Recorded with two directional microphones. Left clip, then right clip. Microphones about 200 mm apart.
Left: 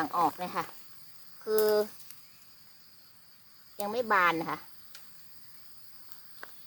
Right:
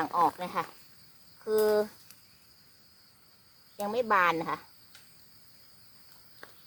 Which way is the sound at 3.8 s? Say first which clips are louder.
Right 1 dB; 20° left (ahead or behind).